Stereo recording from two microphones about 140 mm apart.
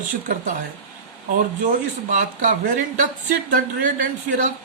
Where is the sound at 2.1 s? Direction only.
65° right (ahead or behind).